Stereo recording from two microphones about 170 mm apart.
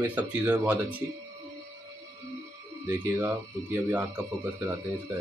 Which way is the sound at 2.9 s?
15° right (ahead or behind).